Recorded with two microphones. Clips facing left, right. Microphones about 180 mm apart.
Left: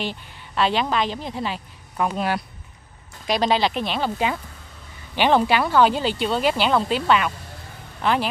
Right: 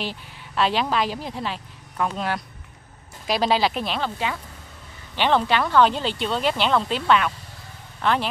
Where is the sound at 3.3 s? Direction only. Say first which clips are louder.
Left 1 dB; 5° right (ahead or behind).